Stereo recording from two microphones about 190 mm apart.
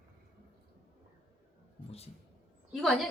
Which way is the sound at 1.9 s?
30° left (ahead or behind).